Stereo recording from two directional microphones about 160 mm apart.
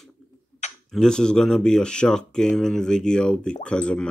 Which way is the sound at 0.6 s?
45° left (ahead or behind).